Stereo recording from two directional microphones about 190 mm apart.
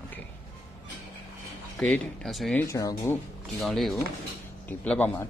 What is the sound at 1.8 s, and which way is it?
Speech, 5° left (ahead or behind).